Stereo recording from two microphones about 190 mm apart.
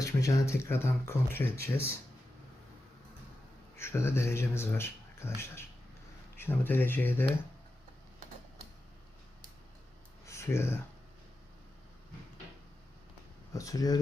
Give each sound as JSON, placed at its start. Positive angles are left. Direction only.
{"t": 0.0, "sound": "speech", "side_deg": 15}
{"t": 3.8, "sound": "speech", "side_deg": 15}
{"t": 10.2, "sound": "a sound", "side_deg": 15}
{"t": 13.5, "sound": "speech", "side_deg": 20}